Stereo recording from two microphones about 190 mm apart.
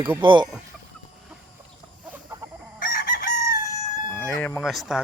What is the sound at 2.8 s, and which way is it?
Chicken, 45° left (ahead or behind).